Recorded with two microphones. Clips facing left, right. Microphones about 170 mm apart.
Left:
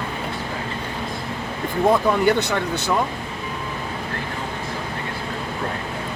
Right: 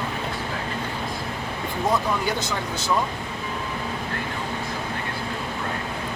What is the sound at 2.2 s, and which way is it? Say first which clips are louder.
Speech: left 7 dB; 60° left (ahead or behind).